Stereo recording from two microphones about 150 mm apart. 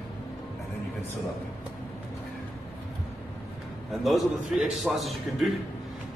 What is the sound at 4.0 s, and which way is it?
A man's voice, centre (ahead or behind).